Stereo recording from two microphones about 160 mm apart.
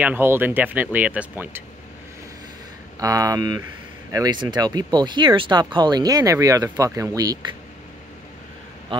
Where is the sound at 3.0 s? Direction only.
20° right (ahead or behind).